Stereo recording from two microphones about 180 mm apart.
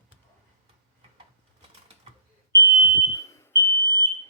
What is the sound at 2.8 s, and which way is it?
Smoke detector, 15° left (ahead or behind).